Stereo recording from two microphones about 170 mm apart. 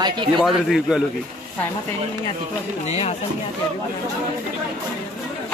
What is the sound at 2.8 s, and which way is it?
Speech, 40° left (ahead or behind).